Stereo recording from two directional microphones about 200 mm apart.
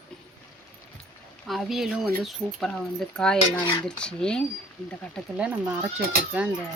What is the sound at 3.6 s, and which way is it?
Speech, 15° left (ahead or behind).